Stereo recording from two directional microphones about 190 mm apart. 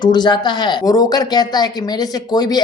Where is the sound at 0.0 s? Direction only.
25° left (ahead or behind).